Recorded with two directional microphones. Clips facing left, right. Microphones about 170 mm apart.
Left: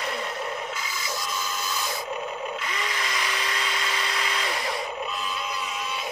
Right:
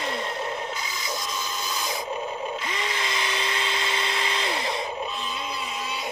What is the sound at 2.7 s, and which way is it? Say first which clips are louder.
Tools: right 1 dB; 25° right (ahead or behind).